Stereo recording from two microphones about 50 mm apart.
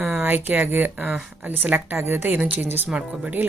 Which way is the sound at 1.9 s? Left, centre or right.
Right.